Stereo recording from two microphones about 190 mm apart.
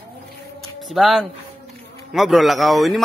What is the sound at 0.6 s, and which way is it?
Music, centre (ahead or behind).